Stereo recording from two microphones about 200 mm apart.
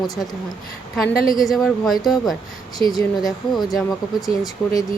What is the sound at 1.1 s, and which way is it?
Speech, 45° left (ahead or behind).